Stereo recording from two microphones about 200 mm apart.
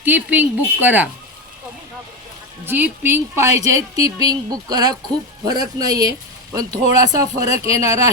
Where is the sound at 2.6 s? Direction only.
10° right (ahead or behind).